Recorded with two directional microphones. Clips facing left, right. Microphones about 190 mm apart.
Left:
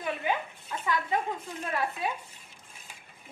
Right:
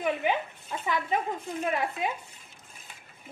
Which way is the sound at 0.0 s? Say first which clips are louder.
Right 3 dB; 25° right (ahead or behind).